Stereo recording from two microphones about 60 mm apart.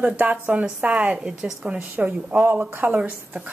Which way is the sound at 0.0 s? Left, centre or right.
Right.